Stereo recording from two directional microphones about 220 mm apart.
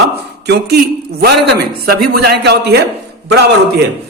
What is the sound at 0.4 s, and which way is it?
Speech, 50° right (ahead or behind).